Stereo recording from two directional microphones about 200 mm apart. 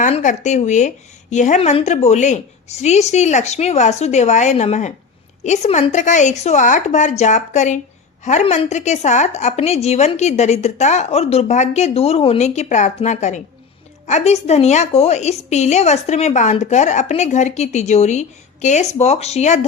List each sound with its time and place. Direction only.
0.0 s a woman's voice: 40° left (ahead or behind)